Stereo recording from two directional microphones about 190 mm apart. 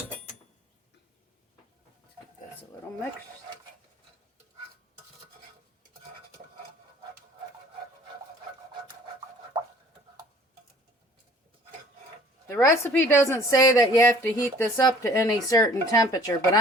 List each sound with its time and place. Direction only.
12.5 s a woman's voice: 15° left (ahead or behind)